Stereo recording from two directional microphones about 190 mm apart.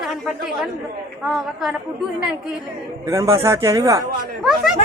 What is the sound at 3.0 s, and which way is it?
Speech, 15° right (ahead or behind).